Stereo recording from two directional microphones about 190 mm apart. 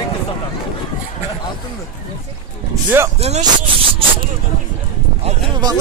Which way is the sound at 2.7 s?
15° right (ahead or behind).